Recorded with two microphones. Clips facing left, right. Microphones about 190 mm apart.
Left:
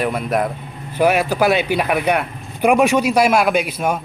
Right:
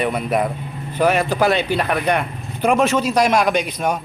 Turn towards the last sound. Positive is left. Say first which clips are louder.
# left 1 dB
turn(degrees=5)  # may be behind; listen again after turning